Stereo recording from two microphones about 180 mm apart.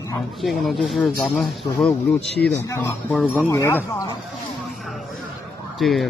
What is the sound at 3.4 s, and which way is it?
Speech, 15° left (ahead or behind).